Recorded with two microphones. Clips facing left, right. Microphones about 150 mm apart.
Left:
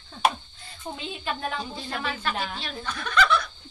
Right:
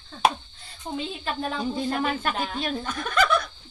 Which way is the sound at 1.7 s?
45° right (ahead or behind).